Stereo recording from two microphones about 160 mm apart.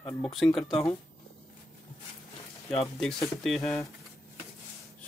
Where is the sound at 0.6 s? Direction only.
30° left (ahead or behind).